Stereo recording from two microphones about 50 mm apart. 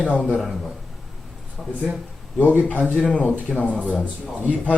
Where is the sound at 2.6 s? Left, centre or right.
Left.